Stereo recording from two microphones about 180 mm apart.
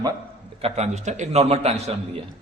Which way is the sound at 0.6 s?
40° right (ahead or behind).